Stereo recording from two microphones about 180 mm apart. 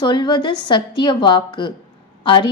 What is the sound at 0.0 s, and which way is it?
A woman's voice, 25° left (ahead or behind).